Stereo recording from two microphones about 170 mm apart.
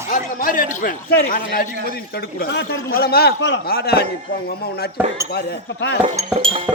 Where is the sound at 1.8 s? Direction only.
65° left (ahead or behind).